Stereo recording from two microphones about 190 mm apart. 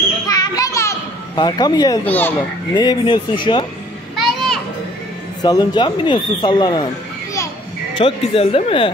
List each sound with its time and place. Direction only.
0.3 s children playing: 20° left (ahead or behind)
2.0 s a child's voice: 10° left (ahead or behind)
2.7 s speech: 20° left (ahead or behind)
4.2 s children playing: centre (ahead or behind)
5.4 s speech: 20° left (ahead or behind)
7.9 s speech: 30° left (ahead or behind)